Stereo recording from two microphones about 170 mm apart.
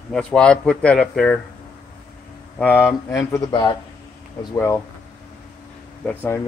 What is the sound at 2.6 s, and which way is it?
Speech, 10° left (ahead or behind).